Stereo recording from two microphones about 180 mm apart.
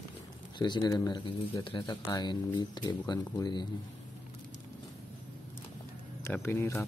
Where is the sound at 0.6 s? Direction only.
25° left (ahead or behind).